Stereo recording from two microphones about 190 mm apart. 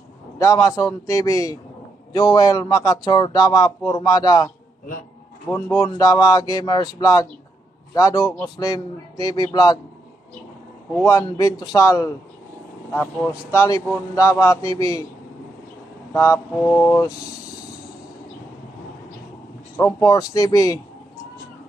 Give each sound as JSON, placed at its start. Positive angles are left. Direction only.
{"t": 0.4, "sound": "speech", "side_deg": 15}
{"t": 5.5, "sound": "speech", "side_deg": 5}
{"t": 5.8, "sound": "speech", "side_deg": 20}
{"t": 11.1, "sound": "speech", "side_deg": 15}
{"t": 16.1, "sound": "speech", "side_deg": 15}
{"t": 19.8, "sound": "speech", "side_deg": 20}